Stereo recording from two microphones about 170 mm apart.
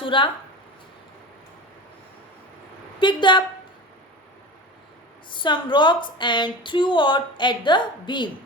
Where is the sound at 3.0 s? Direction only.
30° left (ahead or behind).